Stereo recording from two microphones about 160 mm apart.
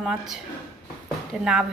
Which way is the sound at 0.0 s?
5° right (ahead or behind).